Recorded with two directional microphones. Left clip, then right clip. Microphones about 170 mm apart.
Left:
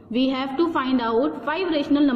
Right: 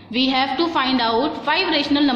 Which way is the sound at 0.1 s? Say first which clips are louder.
Right 5 dB; 35° left (ahead or behind).